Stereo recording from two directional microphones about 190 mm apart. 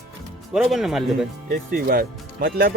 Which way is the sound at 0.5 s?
Centre (ahead or behind).